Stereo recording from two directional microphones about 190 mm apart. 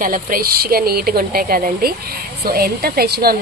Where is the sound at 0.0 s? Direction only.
50° right (ahead or behind).